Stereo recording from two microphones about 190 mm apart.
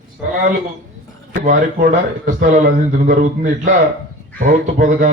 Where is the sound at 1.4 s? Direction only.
45° right (ahead or behind).